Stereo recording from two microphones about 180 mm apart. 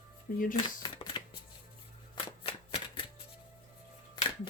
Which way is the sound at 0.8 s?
25° left (ahead or behind).